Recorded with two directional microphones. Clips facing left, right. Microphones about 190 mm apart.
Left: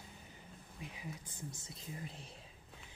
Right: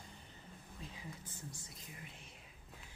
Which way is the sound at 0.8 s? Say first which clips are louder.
Left 3 dB; 15° left (ahead or behind).